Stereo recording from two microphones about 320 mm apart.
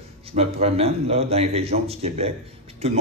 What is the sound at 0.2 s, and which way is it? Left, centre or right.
A man's voice, centre.